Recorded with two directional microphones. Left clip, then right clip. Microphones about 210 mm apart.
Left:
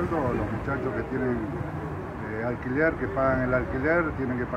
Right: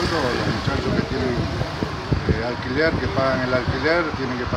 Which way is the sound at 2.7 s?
20° right (ahead or behind).